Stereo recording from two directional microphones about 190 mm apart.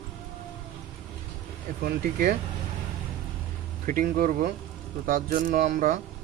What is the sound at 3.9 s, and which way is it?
Speech, 45° right (ahead or behind).